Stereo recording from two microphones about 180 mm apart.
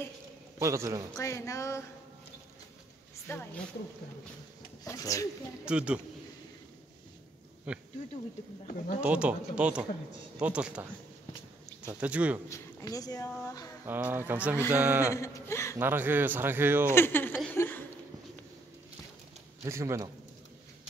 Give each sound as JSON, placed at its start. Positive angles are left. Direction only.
{"t": 0.6, "sound": "speech", "side_deg": -15}
{"t": 1.1, "sound": "speech", "side_deg": 15}
{"t": 3.3, "sound": "speech", "side_deg": 10}
{"t": 4.8, "sound": "speech", "side_deg": 20}
{"t": 5.7, "sound": "a man's voice", "side_deg": -5}
{"t": 7.7, "sound": "speech", "side_deg": -5}
{"t": 9.0, "sound": "speech", "side_deg": -5}
{"t": 11.9, "sound": "speech", "side_deg": -10}
{"t": 12.4, "sound": "speech", "side_deg": 20}
{"t": 13.8, "sound": "speech", "side_deg": -10}
{"t": 15.1, "sound": "speech", "side_deg": 15}
{"t": 15.8, "sound": "speech", "side_deg": -10}
{"t": 16.9, "sound": "speech", "side_deg": 10}
{"t": 19.6, "sound": "speech", "side_deg": -15}